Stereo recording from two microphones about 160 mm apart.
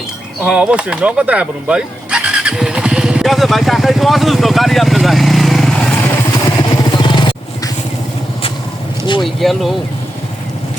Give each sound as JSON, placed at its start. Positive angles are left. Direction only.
{"t": 0.4, "sound": "speech", "side_deg": -5}
{"t": 6.5, "sound": "vehicle", "side_deg": 30}
{"t": 9.2, "sound": "speech", "side_deg": 0}